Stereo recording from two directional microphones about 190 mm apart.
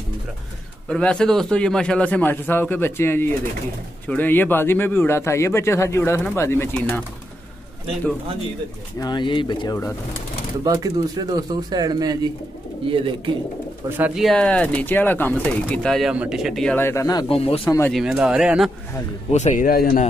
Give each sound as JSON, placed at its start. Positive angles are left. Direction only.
{"t": 0.8, "sound": "speech", "side_deg": 5}
{"t": 9.0, "sound": "speech", "side_deg": 25}
{"t": 10.6, "sound": "speech", "side_deg": -20}
{"t": 13.8, "sound": "speech", "side_deg": -10}
{"t": 17.6, "sound": "speech", "side_deg": 15}
{"t": 17.9, "sound": "speech", "side_deg": -5}
{"t": 19.3, "sound": "speech", "side_deg": 40}